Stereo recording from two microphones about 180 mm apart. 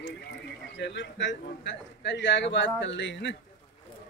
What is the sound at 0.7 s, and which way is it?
A man's voice, 80° left.